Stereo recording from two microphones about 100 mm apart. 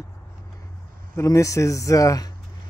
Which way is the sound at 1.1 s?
30° left (ahead or behind).